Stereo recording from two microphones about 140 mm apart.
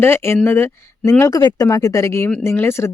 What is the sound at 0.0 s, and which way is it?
Speech, 15° left (ahead or behind).